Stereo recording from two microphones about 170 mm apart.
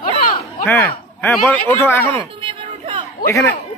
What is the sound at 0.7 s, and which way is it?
Speech, 10° left (ahead or behind).